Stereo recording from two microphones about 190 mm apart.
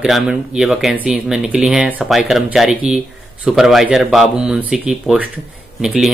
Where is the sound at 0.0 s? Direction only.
5° right (ahead or behind).